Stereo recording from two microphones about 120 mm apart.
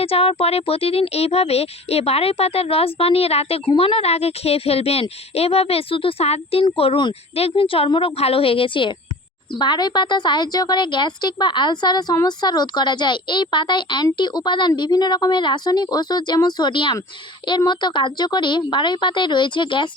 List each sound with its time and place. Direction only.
0.0 s a woman's voice: 55° left (ahead or behind)